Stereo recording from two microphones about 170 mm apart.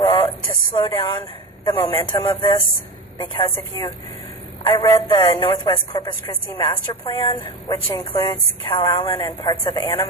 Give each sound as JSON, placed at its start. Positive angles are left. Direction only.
{"t": 0.0, "sound": "a sound", "side_deg": 25}
{"t": 0.9, "sound": "a woman's voice", "side_deg": 20}
{"t": 4.6, "sound": "a woman's voice", "side_deg": 20}